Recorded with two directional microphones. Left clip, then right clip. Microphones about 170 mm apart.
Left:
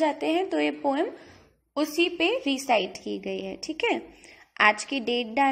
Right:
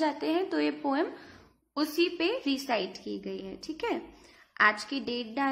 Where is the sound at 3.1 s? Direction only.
50° left (ahead or behind).